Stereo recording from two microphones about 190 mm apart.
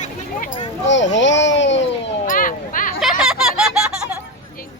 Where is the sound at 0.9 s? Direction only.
70° left (ahead or behind).